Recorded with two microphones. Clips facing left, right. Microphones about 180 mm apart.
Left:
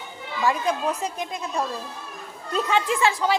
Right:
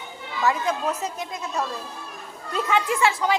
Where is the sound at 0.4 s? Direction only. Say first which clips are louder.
Even; 15° left (ahead or behind).